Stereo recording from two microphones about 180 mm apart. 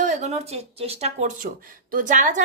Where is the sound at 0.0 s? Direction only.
40° right (ahead or behind).